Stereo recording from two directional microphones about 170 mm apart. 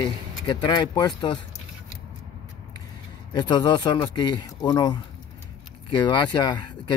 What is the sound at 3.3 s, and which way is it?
Speech, 25° left (ahead or behind).